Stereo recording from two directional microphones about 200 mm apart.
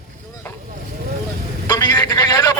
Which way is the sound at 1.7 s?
20° left (ahead or behind).